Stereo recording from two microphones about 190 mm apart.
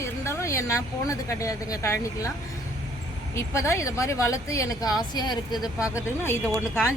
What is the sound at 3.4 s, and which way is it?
A woman's voice, 15° left (ahead or behind).